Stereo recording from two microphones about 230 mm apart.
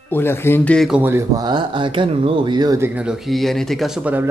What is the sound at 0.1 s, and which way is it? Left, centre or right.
Speech, centre.